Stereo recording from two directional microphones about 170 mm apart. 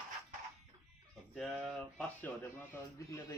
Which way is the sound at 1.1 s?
Centre (ahead or behind).